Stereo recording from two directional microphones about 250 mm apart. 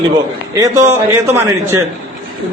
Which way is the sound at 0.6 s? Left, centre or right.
Centre.